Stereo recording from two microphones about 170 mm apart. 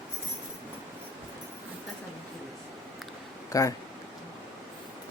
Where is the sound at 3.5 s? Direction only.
20° left (ahead or behind).